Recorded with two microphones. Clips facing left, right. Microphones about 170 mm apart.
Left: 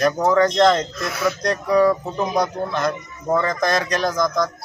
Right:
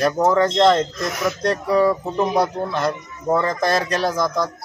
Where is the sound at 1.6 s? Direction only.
5° right (ahead or behind).